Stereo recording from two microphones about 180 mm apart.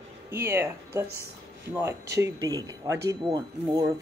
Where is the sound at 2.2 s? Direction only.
20° right (ahead or behind).